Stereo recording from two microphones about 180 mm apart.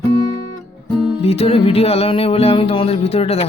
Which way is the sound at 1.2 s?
35° left (ahead or behind).